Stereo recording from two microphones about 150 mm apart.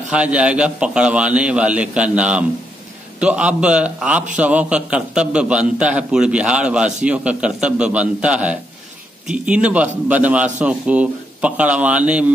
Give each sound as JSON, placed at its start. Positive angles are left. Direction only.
{"t": 0.1, "sound": "a man's voice", "side_deg": -10}